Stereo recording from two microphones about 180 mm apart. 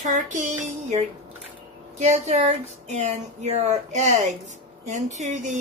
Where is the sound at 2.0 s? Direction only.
40° right (ahead or behind).